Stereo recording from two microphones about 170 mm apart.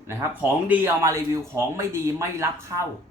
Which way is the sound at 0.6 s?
10° right (ahead or behind).